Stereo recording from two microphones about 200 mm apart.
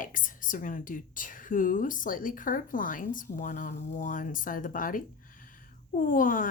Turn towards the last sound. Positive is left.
turn(degrees=45)  # may be behind; listen again after turning